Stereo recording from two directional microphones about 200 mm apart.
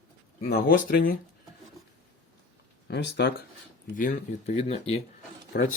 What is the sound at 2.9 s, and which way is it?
Speech, 60° left (ahead or behind).